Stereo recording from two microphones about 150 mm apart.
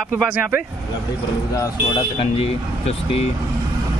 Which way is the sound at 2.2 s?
40° left (ahead or behind).